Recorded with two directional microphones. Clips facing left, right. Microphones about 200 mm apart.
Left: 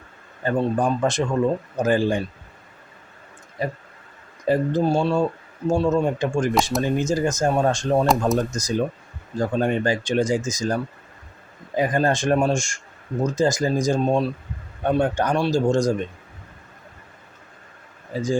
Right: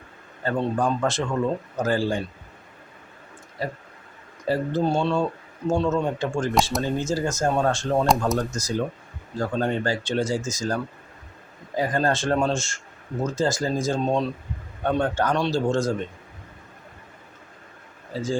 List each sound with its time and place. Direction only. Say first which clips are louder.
0.4 s speech: left 2 dB; 15° left (ahead or behind)
3.6 s speech: left 3 dB; 20° left (ahead or behind)
18.1 s speech: left 3 dB; 15° left (ahead or behind)